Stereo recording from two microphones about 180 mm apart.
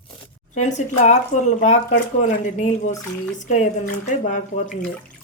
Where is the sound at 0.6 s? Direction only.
40° left (ahead or behind).